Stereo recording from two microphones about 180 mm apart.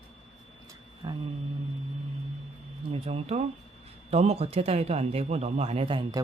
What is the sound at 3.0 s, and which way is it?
Speech, 35° right (ahead or behind).